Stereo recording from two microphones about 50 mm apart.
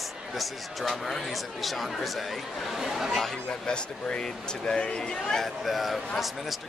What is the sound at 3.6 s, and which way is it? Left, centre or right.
Speech, centre.